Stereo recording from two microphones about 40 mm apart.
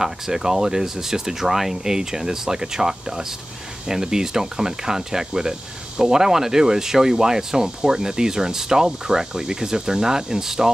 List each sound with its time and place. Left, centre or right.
0.0 s speech: centre